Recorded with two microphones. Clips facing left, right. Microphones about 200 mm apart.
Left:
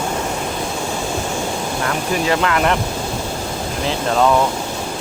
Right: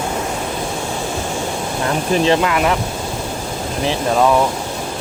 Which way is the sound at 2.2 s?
20° right (ahead or behind).